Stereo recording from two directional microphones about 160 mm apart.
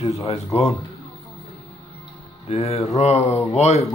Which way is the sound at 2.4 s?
40° left (ahead or behind).